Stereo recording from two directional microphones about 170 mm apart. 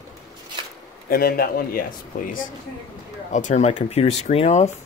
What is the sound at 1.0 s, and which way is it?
A man's voice, 60° left (ahead or behind).